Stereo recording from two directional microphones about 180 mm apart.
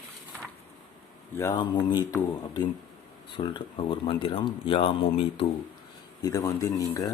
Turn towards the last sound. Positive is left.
turn(degrees=20)  # may be behind; listen again after turning